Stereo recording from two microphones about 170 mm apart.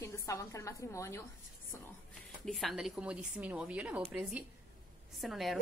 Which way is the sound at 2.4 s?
Centre (ahead or behind).